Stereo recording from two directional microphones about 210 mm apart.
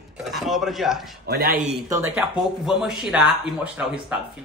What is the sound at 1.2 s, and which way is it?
Speech, 45° right (ahead or behind).